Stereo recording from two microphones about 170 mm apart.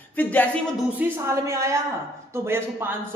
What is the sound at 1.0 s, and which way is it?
A man's voice, 15° right (ahead or behind).